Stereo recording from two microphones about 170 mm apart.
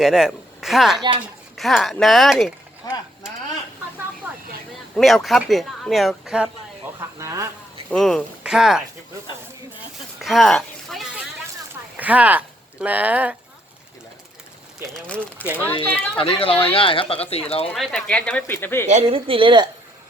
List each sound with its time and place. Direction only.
0.0 s speech: centre (ahead or behind)
2.8 s a sound: 20° left (ahead or behind)
4.3 s vehicle: 10° right (ahead or behind)
4.9 s speech: centre (ahead or behind)
7.2 s speech: 20° right (ahead or behind)
7.9 s speech: centre (ahead or behind)
10.2 s a sound: centre (ahead or behind)
11.9 s speech: 10° right (ahead or behind)
15.0 s speech: 5° left (ahead or behind)
16.1 s speech: 30° left (ahead or behind)
17.7 s speech: 5° left (ahead or behind)
18.9 s a woman's voice: 40° right (ahead or behind)